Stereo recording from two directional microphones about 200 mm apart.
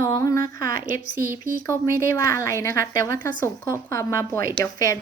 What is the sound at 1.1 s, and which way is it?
Speech, 10° right (ahead or behind).